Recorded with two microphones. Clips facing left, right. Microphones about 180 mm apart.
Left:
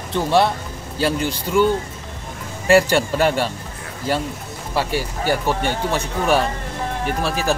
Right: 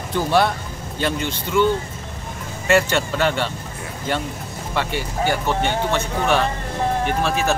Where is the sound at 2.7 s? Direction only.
35° left (ahead or behind).